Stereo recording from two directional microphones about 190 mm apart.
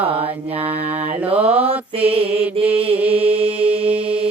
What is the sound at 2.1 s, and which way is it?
Mantra, 30° right (ahead or behind).